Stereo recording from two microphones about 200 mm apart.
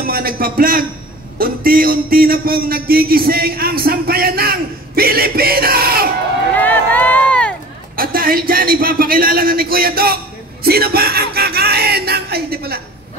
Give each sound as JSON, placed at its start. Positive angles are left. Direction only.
{"t": 0.0, "sound": "speech", "side_deg": -50}
{"t": 6.6, "sound": "run", "side_deg": 10}
{"t": 7.9, "sound": "speech", "side_deg": -45}
{"t": 10.6, "sound": "a sound", "side_deg": -50}